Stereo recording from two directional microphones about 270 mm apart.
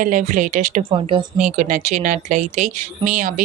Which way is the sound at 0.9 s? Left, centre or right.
Centre.